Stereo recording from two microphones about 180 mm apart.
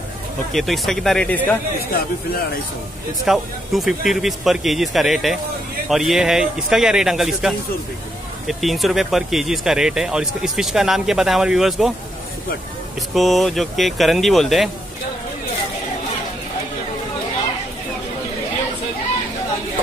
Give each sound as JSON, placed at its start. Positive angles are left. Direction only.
{"t": 0.5, "sound": "speech", "side_deg": 0}
{"t": 3.3, "sound": "speech", "side_deg": 0}
{"t": 13.1, "sound": "speech", "side_deg": 0}